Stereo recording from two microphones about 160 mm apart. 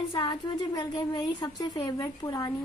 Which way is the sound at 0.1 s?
30° left (ahead or behind).